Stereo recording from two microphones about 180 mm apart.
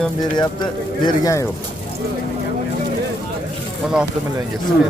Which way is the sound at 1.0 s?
20° left (ahead or behind).